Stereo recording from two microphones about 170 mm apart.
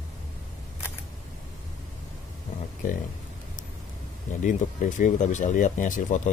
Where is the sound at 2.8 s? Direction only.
50° left (ahead or behind).